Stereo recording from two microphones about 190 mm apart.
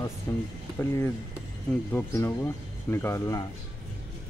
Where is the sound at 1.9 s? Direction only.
15° left (ahead or behind).